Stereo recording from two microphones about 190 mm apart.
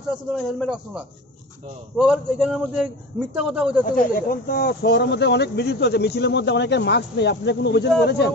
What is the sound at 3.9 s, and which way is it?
Speech, 45° left (ahead or behind).